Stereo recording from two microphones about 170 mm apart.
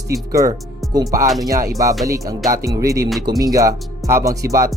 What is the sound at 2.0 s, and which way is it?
Speech, 20° right (ahead or behind).